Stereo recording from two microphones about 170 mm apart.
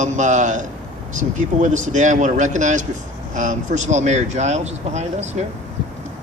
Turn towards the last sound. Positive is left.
turn(degrees=-40)  # may be behind; listen again after turning